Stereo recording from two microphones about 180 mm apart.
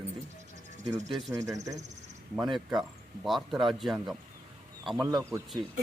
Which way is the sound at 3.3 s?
Centre (ahead or behind).